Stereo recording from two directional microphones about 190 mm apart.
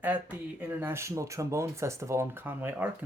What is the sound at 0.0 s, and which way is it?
Speech, 10° right (ahead or behind).